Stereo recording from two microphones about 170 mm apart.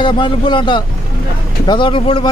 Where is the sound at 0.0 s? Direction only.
30° left (ahead or behind).